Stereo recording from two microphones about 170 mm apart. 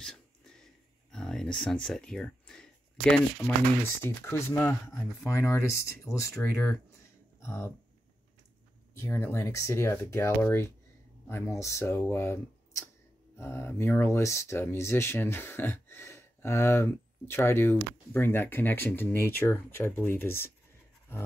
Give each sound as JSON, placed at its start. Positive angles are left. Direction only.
{"t": 1.1, "sound": "a sound", "side_deg": 5}
{"t": 4.0, "sound": "speech", "side_deg": 15}
{"t": 7.4, "sound": "speech", "side_deg": 15}
{"t": 8.9, "sound": "speech", "side_deg": 15}